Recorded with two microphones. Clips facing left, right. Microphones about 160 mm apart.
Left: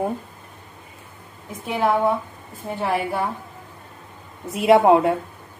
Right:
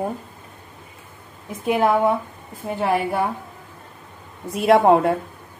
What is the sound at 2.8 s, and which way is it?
Speech, 20° right (ahead or behind).